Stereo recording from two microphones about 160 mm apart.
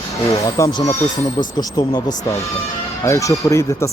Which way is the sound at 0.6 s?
20° left (ahead or behind).